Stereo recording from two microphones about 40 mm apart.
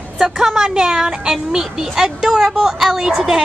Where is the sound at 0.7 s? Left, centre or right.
Centre.